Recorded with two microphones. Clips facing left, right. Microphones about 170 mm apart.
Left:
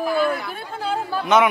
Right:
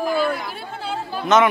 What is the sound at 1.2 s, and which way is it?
Speech, 10° left (ahead or behind).